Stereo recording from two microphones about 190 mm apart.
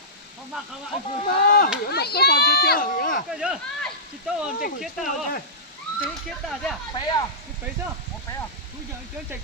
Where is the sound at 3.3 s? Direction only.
5° right (ahead or behind).